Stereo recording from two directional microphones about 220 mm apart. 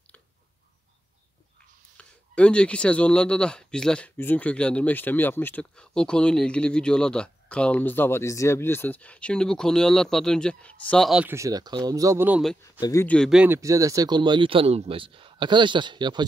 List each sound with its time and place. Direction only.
2.0 s speech: 5° left (ahead or behind)
12.8 s speech: 10° left (ahead or behind); by 16.3 s 20° right (ahead or behind)